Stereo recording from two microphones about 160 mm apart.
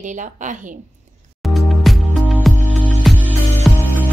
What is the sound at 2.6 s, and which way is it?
Music, 10° left (ahead or behind).